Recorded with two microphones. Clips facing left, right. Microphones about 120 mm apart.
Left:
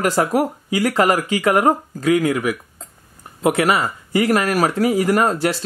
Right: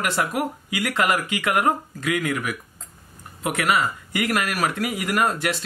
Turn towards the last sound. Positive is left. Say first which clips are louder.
# left 6 dB
turn(degrees=35)  # may be behind; listen again after turning